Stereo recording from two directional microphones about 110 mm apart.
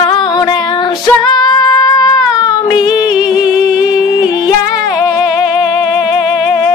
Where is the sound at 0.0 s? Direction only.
45° left (ahead or behind).